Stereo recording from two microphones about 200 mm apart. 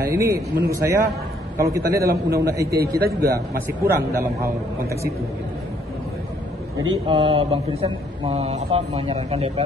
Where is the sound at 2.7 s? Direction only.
50° right (ahead or behind).